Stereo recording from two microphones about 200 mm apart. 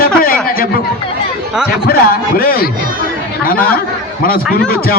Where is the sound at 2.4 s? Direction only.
45° left (ahead or behind).